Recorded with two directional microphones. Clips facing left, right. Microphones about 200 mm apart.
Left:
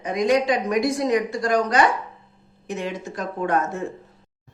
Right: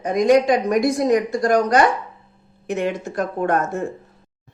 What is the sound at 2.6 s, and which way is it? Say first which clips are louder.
Speech: right 6 dB; 60° right (ahead or behind).